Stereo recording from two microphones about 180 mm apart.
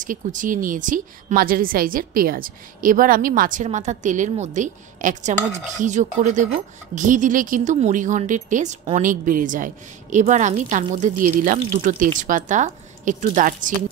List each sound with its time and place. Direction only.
0.0 s a woman's voice: 45° right (ahead or behind)